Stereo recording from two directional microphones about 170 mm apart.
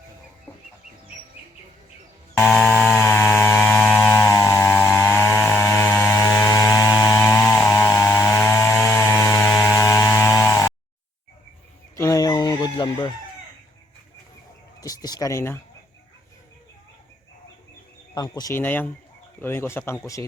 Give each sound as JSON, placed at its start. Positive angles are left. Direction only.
{"t": 2.4, "sound": "a sound", "side_deg": 0}
{"t": 8.5, "sound": "chainsaw", "side_deg": 20}
{"t": 11.9, "sound": "chicken", "side_deg": 20}
{"t": 14.8, "sound": "speech", "side_deg": 20}
{"t": 18.1, "sound": "speech", "side_deg": 20}